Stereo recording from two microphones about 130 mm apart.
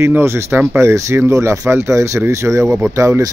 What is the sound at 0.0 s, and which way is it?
Speech, 20° right (ahead or behind).